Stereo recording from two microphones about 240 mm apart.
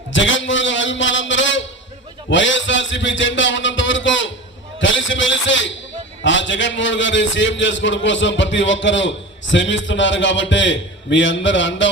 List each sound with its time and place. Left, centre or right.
0.1 s a man's voice: left